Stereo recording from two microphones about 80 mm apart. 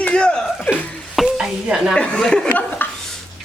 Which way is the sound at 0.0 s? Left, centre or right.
Centre.